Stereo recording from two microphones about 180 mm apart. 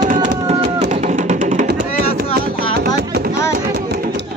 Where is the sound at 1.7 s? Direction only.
55° right (ahead or behind).